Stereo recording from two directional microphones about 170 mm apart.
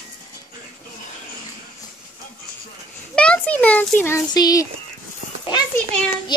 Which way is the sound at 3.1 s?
5° left (ahead or behind).